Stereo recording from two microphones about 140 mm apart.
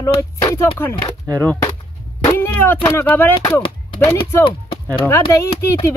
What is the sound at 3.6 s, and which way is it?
Speech, 40° left (ahead or behind).